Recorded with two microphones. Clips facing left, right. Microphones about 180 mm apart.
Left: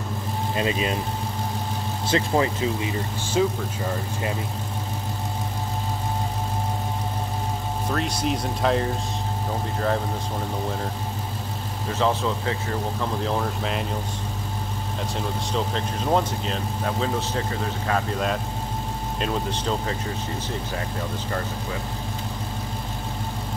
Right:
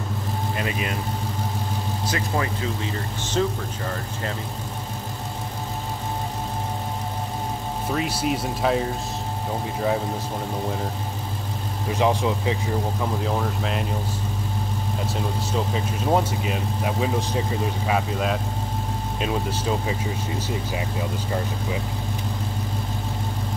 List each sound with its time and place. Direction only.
0.6 s speech: 25° left (ahead or behind)
2.0 s speech: 25° left (ahead or behind)
7.9 s speech: 5° right (ahead or behind)
11.9 s speech: 15° right (ahead or behind)
15.5 s speech: 10° right (ahead or behind)